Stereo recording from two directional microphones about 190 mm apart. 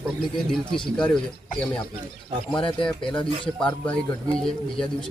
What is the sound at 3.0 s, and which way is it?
Speech, 25° left (ahead or behind).